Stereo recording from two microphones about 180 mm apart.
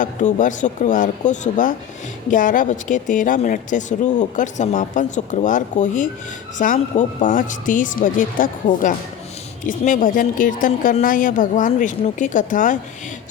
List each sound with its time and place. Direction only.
0.0 s speech: 45° left (ahead or behind)